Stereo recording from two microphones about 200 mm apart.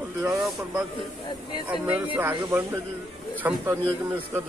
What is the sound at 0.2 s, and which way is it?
Speech, 10° right (ahead or behind).